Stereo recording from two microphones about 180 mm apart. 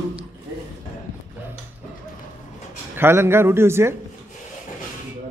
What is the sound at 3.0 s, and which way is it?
Speech, 15° right (ahead or behind).